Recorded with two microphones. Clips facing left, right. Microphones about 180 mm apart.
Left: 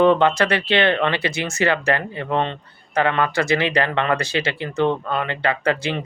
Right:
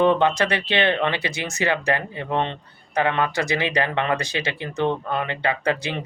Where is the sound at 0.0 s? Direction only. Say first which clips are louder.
Left 3 dB; 15° right (ahead or behind).